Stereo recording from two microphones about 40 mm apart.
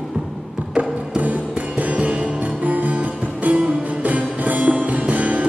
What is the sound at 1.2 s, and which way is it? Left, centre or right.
Music, right.